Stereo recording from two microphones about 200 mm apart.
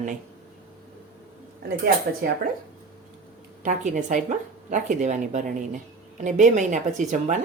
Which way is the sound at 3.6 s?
40° right (ahead or behind).